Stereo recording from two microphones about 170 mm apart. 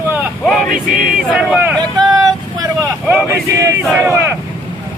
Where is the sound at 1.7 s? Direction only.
25° right (ahead or behind).